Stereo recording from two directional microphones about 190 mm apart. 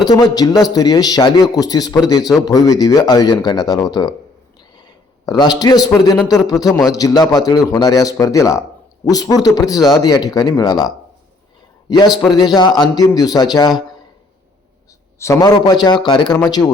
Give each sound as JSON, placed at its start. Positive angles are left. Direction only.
{"t": 0.3, "sound": "a man's voice", "side_deg": 20}
{"t": 15.2, "sound": "a man's voice", "side_deg": 15}